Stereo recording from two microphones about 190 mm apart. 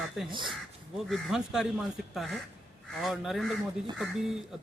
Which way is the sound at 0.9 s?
Centre (ahead or behind).